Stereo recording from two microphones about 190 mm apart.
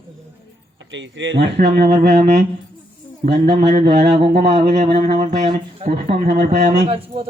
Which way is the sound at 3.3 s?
35° right (ahead or behind).